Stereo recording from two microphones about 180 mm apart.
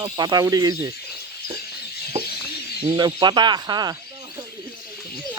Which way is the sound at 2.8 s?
25° right (ahead or behind).